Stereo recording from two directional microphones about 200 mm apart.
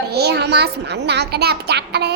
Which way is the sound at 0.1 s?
55° right (ahead or behind).